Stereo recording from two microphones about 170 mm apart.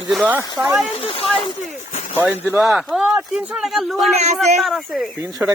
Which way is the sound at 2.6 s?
Centre (ahead or behind).